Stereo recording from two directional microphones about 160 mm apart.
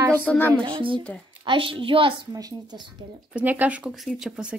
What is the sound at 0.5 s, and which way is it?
A child's voice, 30° right (ahead or behind).